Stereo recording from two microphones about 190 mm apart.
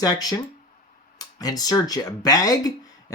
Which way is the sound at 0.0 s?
20° left (ahead or behind).